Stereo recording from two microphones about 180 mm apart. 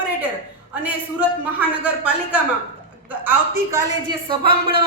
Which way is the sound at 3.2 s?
15° right (ahead or behind).